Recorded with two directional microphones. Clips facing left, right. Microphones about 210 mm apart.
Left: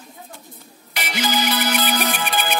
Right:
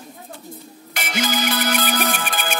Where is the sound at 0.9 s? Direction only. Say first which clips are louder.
Even; 50° right (ahead or behind).